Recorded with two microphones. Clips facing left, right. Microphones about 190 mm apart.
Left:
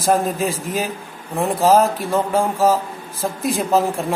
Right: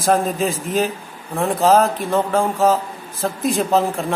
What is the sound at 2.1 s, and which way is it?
Speech, 15° left (ahead or behind).